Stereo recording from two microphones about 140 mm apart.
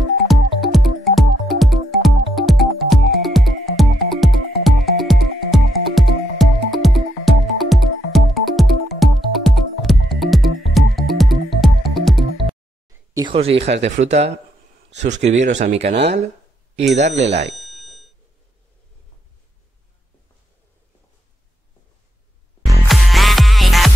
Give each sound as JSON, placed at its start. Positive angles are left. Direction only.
{"t": 0.3, "sound": "music", "side_deg": 0}
{"t": 13.1, "sound": "speech", "side_deg": -35}
{"t": 17.6, "sound": "a sound", "side_deg": 0}
{"t": 22.8, "sound": "music", "side_deg": 0}